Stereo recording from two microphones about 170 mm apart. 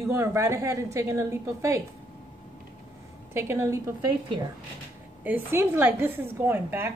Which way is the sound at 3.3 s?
15° right (ahead or behind).